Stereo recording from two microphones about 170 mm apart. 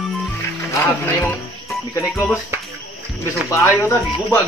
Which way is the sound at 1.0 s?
15° left (ahead or behind).